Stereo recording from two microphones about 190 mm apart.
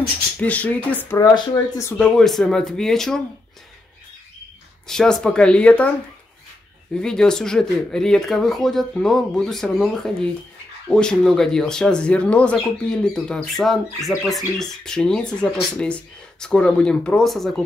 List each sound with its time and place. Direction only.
0.4 s speech: 10° left (ahead or behind)
1.2 s speech: 20° left (ahead or behind)
2.0 s speech: 5° left (ahead or behind)
4.8 s speech: 5° left (ahead or behind)
7.0 s speech: 5° left (ahead or behind)